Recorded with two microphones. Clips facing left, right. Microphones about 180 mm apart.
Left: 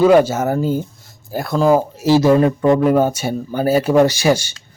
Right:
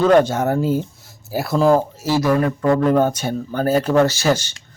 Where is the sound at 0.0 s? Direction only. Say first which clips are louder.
Left 2 dB; 5° left (ahead or behind).